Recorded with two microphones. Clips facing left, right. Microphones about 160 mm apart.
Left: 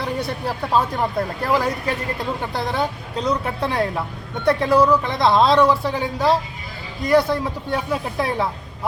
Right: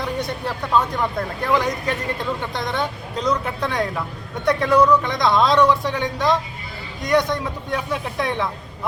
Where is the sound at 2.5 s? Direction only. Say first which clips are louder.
Left 2 dB; 35° left (ahead or behind).